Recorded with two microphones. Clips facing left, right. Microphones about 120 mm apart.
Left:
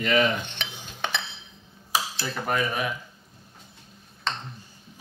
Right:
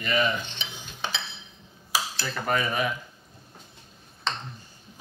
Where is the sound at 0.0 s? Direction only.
90° left.